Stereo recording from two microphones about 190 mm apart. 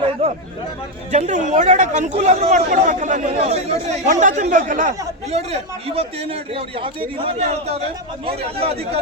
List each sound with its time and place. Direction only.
0.2 s chatter: 30° right (ahead or behind)
1.1 s a man's voice: 40° right (ahead or behind)